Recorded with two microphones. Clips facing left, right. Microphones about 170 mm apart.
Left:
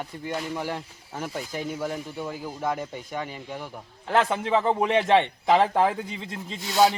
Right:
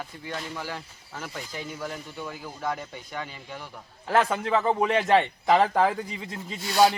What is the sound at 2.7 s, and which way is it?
Speech, 10° left (ahead or behind).